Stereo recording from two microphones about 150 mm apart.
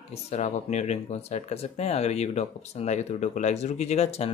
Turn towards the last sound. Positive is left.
turn(degrees=45)  # may be behind; listen again after turning